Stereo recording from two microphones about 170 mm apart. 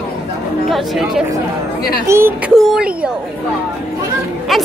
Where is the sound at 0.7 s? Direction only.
Centre (ahead or behind).